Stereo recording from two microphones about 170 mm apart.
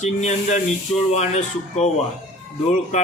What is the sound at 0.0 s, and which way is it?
Speech, 45° left (ahead or behind).